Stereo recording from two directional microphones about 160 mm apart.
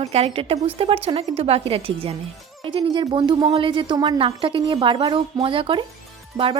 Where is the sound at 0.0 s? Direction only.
40° right (ahead or behind).